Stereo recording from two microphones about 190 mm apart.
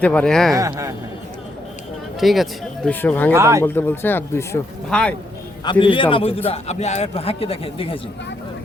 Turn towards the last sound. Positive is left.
turn(degrees=30)  # may be behind; listen again after turning